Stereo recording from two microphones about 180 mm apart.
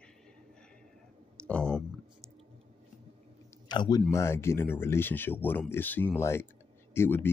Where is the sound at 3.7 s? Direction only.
20° left (ahead or behind).